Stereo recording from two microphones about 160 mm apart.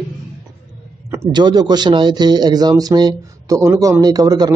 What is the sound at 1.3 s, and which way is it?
A man's voice, 25° right (ahead or behind).